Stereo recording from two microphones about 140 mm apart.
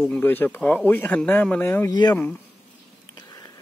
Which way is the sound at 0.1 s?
15° left (ahead or behind).